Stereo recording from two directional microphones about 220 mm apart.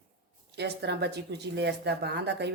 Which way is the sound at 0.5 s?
50° right (ahead or behind).